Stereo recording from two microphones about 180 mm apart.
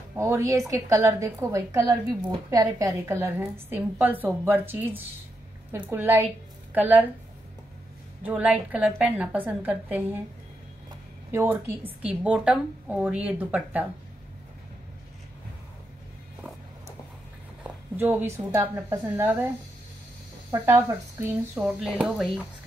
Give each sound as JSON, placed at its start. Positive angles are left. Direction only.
{"t": 0.1, "sound": "a woman's voice", "side_deg": -15}
{"t": 8.3, "sound": "a woman's voice", "side_deg": -5}
{"t": 11.3, "sound": "a woman's voice", "side_deg": -10}
{"t": 17.9, "sound": "a woman's voice", "side_deg": -10}
{"t": 20.5, "sound": "a woman's voice", "side_deg": -15}